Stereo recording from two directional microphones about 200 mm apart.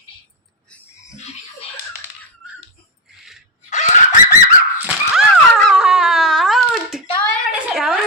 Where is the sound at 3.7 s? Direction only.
35° left (ahead or behind).